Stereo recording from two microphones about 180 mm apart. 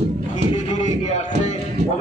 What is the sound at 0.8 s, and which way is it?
Music, 40° left (ahead or behind).